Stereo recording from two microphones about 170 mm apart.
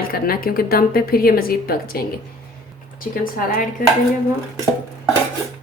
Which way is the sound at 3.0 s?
55° left (ahead or behind).